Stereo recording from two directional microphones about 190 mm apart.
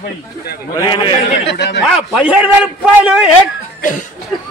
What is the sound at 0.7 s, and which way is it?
Speech, 20° left (ahead or behind).